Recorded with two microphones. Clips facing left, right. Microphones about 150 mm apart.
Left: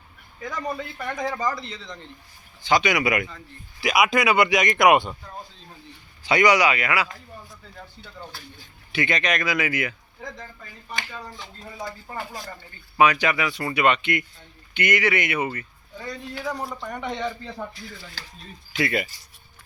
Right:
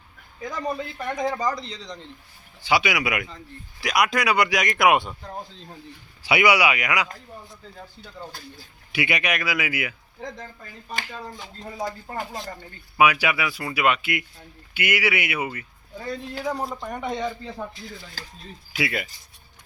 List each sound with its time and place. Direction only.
0.5 s speech: centre (ahead or behind)
0.9 s speech: 20° right (ahead or behind)
1.5 s speech: centre (ahead or behind)
6.2 s speech: 10° right (ahead or behind)
8.9 s speech: 10° right (ahead or behind)
11.8 s speech: 40° right (ahead or behind)
12.1 s speech: 25° right (ahead or behind)
13.0 s speech: 10° right (ahead or behind)
16.0 s speech: 25° right (ahead or behind)
17.2 s speech: 10° right (ahead or behind)
18.7 s speech: 5° right (ahead or behind)